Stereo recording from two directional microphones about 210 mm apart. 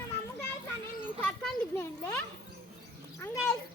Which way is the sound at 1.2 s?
Centre (ahead or behind).